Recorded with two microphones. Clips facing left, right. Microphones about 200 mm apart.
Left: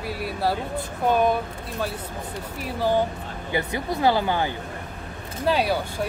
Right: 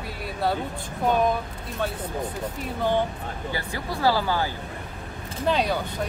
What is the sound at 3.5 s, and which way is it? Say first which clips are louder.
Speech: left 7 dB; 20° left (ahead or behind).